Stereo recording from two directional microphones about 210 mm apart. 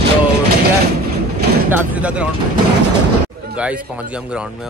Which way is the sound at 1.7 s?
10° right (ahead or behind).